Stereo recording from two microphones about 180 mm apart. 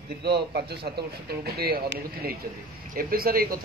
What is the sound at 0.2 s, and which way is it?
Speech, 65° right (ahead or behind).